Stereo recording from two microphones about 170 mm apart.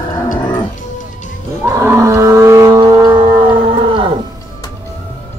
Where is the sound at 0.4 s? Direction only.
25° left (ahead or behind).